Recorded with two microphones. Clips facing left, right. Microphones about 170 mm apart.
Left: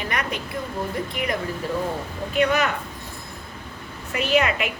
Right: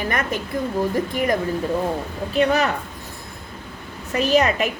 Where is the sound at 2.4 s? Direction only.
35° right (ahead or behind).